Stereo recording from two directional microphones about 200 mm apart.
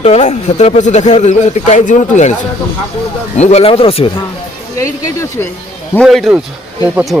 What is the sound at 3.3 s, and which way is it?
Speech, 35° left (ahead or behind).